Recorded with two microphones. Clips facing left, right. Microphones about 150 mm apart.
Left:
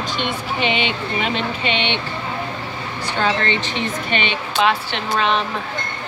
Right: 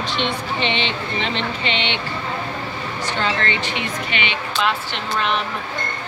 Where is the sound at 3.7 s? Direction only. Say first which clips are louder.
Left 3 dB; 45° left (ahead or behind).